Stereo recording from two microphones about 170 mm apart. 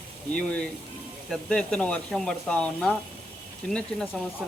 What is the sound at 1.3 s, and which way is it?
Speech, 5° left (ahead or behind).